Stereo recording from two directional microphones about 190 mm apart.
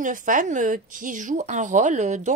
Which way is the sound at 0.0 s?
45° right (ahead or behind).